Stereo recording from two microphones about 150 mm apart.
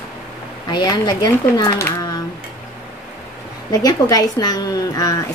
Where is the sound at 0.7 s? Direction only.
25° left (ahead or behind).